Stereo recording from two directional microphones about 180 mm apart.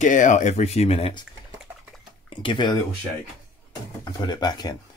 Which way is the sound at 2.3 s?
25° left (ahead or behind).